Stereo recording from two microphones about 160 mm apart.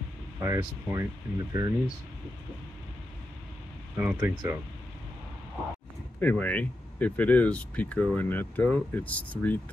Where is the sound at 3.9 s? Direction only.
10° right (ahead or behind).